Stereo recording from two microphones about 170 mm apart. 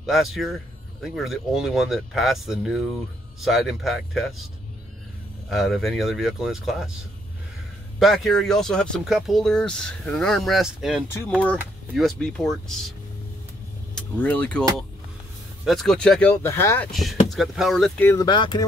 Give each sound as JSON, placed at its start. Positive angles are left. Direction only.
{"t": 0.0, "sound": "speech", "side_deg": 0}
{"t": 5.5, "sound": "speech", "side_deg": 0}
{"t": 8.0, "sound": "speech", "side_deg": 0}
{"t": 11.1, "sound": "speech", "side_deg": 10}
{"t": 13.9, "sound": "speech", "side_deg": 5}
{"t": 15.6, "sound": "speech", "side_deg": 0}
{"t": 16.9, "sound": "speech", "side_deg": 0}
{"t": 18.2, "sound": "speech", "side_deg": 25}